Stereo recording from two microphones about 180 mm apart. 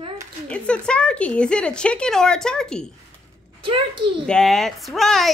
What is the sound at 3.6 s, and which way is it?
Speech, 30° right (ahead or behind).